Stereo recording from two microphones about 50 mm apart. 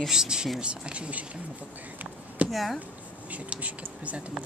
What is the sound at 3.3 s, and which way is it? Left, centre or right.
Speech, right.